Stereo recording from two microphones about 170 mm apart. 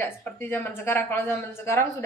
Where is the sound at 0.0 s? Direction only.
10° left (ahead or behind).